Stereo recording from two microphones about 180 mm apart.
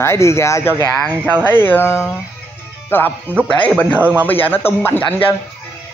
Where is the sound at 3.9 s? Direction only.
10° right (ahead or behind).